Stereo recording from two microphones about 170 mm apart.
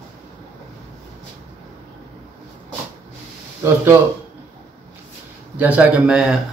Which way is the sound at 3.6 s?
15° right (ahead or behind).